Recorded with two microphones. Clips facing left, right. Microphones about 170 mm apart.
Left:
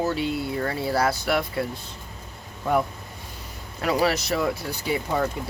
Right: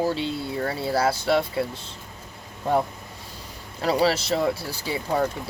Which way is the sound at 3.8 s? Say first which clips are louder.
Right 1 dB; 30° right (ahead or behind).